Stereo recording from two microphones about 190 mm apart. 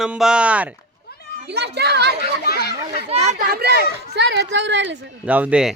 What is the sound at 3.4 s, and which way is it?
Speech, 55° right (ahead or behind).